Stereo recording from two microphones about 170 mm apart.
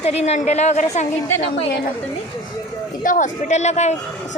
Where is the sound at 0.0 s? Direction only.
40° left (ahead or behind).